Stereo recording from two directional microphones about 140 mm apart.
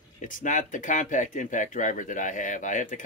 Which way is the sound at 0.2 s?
65° left (ahead or behind).